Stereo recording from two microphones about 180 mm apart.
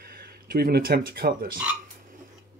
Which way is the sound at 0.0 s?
60° right (ahead or behind).